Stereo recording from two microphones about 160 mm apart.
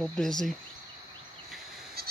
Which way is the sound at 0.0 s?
5° left (ahead or behind).